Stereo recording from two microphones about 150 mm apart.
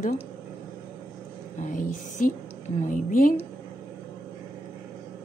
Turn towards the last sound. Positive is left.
turn(degrees=65)  # may be behind; listen again after turning